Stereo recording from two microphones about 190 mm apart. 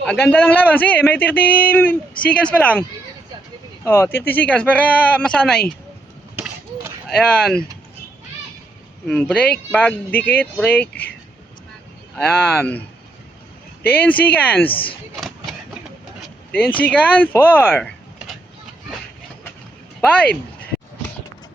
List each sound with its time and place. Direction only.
0.0 s speech: 10° left (ahead or behind)
3.8 s speech: 10° left (ahead or behind)
7.1 s speech: 5° left (ahead or behind)
9.0 s speech: 5° left (ahead or behind)
12.1 s speech: 5° left (ahead or behind)
13.8 s speech: 10° left (ahead or behind)
14.7 s speech: 30° left (ahead or behind)
16.2 s speech: 10° left (ahead or behind)
20.0 s speech: 5° left (ahead or behind)